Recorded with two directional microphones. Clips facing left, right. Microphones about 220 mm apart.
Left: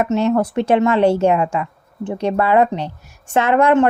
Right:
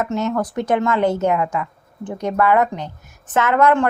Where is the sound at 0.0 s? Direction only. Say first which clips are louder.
Left 5 dB; 25° left (ahead or behind).